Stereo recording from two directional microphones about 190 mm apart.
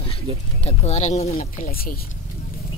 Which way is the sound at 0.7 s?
35° left (ahead or behind).